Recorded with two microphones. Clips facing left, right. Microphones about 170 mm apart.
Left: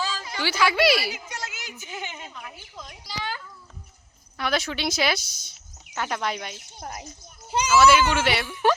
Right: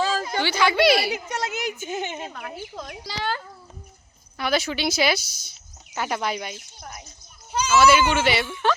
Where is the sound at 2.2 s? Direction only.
60° right (ahead or behind).